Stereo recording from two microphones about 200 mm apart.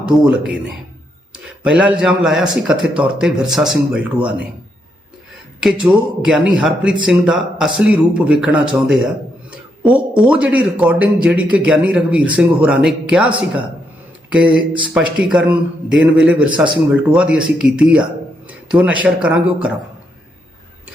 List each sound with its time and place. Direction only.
0.0 s a man's voice: 5° right (ahead or behind)
1.6 s a man's voice: 5° right (ahead or behind)
5.6 s a man's voice: 5° right (ahead or behind)
18.4 s a sound: 5° right (ahead or behind)
19.0 s a man's voice: 5° right (ahead or behind)